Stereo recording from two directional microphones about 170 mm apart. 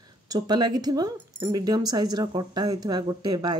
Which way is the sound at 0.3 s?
25° right (ahead or behind).